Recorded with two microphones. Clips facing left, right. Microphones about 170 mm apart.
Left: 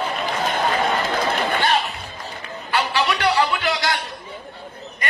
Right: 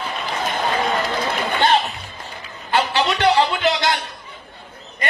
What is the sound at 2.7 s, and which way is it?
Music, 25° right (ahead or behind).